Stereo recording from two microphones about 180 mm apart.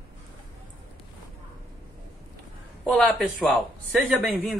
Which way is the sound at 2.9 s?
Centre (ahead or behind).